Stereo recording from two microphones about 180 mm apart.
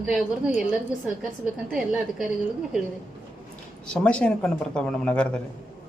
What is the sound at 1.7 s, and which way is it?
Speech, centre (ahead or behind).